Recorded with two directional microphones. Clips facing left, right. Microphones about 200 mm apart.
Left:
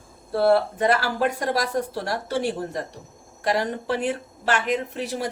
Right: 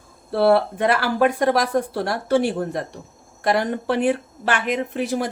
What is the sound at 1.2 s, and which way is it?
Speech, 55° right (ahead or behind).